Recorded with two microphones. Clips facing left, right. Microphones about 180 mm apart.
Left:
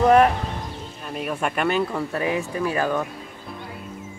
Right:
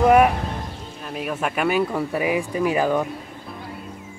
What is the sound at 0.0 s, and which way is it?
Speech, 10° right (ahead or behind).